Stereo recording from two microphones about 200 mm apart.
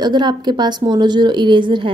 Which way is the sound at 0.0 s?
20° right (ahead or behind).